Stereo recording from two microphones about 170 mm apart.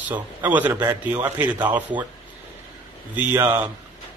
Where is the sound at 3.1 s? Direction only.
10° right (ahead or behind).